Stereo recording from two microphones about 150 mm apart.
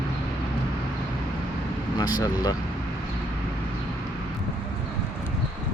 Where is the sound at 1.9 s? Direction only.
25° left (ahead or behind).